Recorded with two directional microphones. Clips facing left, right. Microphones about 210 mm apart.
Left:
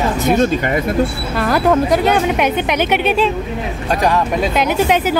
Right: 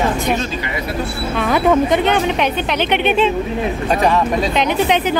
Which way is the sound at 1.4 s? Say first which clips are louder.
Even; centre (ahead or behind).